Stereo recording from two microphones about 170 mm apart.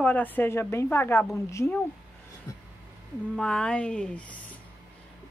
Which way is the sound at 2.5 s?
20° left (ahead or behind).